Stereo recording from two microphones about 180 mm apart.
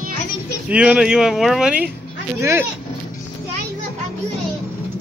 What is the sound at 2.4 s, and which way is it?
Speech, 15° right (ahead or behind).